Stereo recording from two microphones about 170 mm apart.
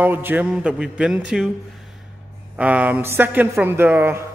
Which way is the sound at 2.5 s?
10° right (ahead or behind).